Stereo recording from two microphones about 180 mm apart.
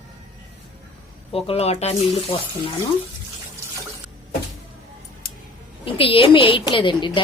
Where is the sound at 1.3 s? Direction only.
35° left (ahead or behind).